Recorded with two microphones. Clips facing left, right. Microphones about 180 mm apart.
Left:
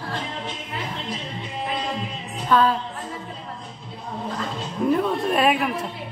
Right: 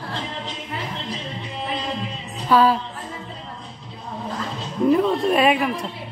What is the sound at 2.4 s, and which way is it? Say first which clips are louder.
Music: right 2 dB; 5° right (ahead or behind).